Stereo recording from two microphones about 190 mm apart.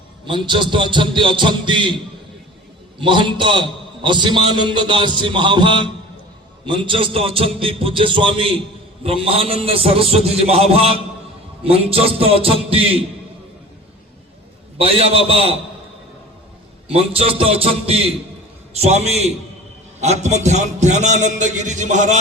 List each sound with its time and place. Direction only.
0.3 s a man's voice: 25° right (ahead or behind)
3.0 s a man's voice: 25° right (ahead or behind)
14.8 s a man's voice: 30° right (ahead or behind)
16.9 s a man's voice: 30° right (ahead or behind)